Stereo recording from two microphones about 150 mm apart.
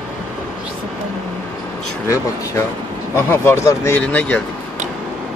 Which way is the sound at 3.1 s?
15° left (ahead or behind).